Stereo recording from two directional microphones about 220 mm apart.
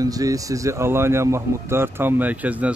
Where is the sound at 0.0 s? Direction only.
15° right (ahead or behind).